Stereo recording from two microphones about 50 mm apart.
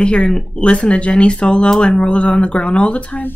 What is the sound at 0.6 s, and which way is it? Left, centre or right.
Speech, left.